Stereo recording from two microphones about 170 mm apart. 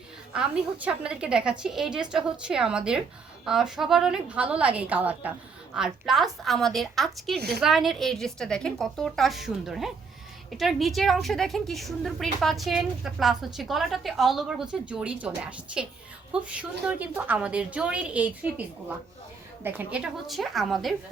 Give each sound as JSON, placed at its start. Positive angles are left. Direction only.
{"t": 0.3, "sound": "a woman's voice", "side_deg": -5}
{"t": 7.3, "sound": "a woman's voice", "side_deg": -70}
{"t": 7.6, "sound": "a woman's voice", "side_deg": 0}
{"t": 19.6, "sound": "a woman's voice", "side_deg": -10}